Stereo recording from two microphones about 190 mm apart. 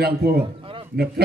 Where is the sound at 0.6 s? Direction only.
25° right (ahead or behind).